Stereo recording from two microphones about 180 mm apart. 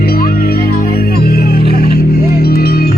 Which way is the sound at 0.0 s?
55° left (ahead or behind).